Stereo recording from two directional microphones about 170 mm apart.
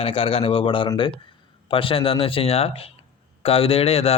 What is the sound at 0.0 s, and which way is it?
Speech, 35° left (ahead or behind).